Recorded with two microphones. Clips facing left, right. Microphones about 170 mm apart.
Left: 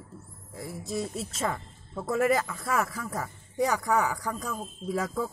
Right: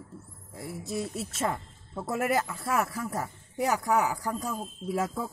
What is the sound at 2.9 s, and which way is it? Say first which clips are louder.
Speech: right 2 dB; 25° right (ahead or behind).